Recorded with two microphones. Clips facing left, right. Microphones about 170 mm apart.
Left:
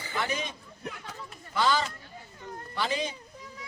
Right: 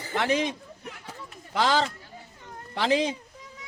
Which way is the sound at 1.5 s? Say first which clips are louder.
Right 3 dB; 90° right.